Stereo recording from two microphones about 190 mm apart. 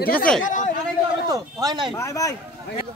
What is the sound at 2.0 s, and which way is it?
Speech, 15° left (ahead or behind).